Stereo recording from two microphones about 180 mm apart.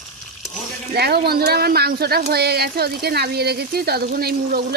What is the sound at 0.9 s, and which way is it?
Speech, 60° right (ahead or behind).